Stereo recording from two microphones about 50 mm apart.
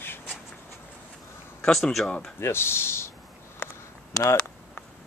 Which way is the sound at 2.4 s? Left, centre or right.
Left.